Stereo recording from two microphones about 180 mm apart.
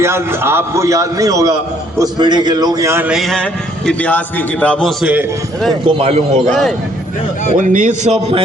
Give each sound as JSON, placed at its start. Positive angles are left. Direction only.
{"t": 0.0, "sound": "a man's voice", "side_deg": -15}
{"t": 6.0, "sound": "a man's voice", "side_deg": -35}
{"t": 6.5, "sound": "a man's voice", "side_deg": 0}
{"t": 7.5, "sound": "a man's voice", "side_deg": -45}